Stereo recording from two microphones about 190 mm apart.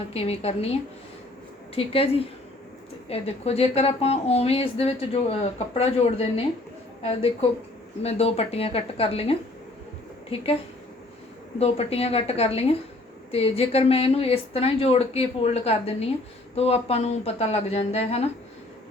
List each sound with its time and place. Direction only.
0.1 s speech: 30° left (ahead or behind)
11.6 s speech: 30° left (ahead or behind)